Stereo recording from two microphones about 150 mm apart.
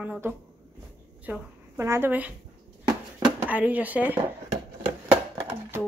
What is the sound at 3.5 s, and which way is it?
Speech, 10° right (ahead or behind).